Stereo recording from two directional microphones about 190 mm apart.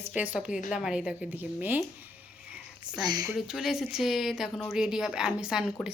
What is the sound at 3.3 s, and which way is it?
A woman's voice, centre (ahead or behind).